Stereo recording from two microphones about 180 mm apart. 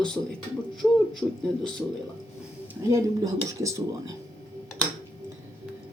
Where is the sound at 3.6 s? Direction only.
20° right (ahead or behind).